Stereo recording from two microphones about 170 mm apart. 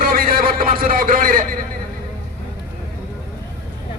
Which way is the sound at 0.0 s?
60° right (ahead or behind).